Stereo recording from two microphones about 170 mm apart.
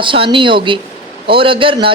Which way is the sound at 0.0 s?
30° right (ahead or behind).